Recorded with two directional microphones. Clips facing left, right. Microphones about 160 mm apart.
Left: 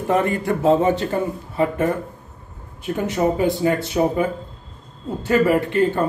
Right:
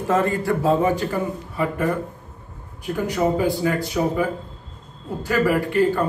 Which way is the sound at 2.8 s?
25° left (ahead or behind).